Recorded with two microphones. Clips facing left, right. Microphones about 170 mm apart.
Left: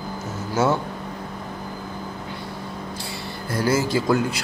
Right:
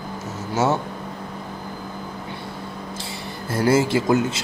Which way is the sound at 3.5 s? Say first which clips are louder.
Right 3 dB; 25° right (ahead or behind).